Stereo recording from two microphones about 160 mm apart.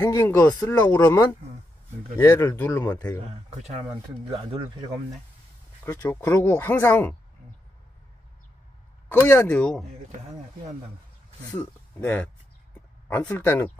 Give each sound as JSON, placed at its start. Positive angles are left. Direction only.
{"t": 0.0, "sound": "speech", "side_deg": 20}
{"t": 5.9, "sound": "speech", "side_deg": 20}
{"t": 9.1, "sound": "speech", "side_deg": 15}
{"t": 12.0, "sound": "speech", "side_deg": 10}